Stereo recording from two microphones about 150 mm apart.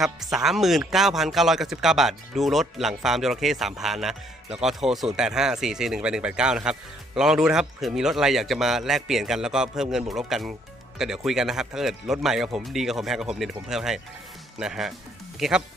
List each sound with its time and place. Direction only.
0.0 s speech: centre (ahead or behind)